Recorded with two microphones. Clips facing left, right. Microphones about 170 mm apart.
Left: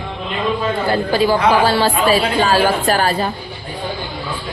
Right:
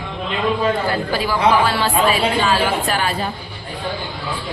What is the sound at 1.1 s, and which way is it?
Speech, 25° left (ahead or behind).